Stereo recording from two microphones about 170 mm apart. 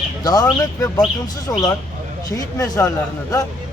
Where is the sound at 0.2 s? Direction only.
20° left (ahead or behind).